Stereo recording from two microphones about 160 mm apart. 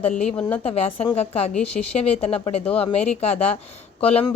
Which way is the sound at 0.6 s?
40° left (ahead or behind).